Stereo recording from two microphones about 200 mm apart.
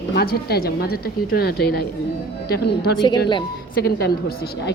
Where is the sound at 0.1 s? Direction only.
50° left (ahead or behind).